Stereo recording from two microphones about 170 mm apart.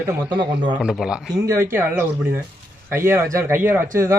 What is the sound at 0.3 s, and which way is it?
Speech, 25° right (ahead or behind).